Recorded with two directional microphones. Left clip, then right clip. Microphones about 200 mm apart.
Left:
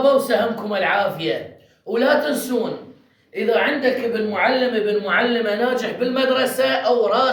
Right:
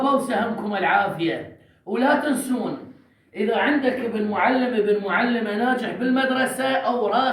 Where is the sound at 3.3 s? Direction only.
20° left (ahead or behind).